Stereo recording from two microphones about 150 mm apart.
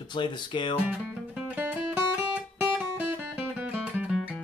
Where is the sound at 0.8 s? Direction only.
10° right (ahead or behind).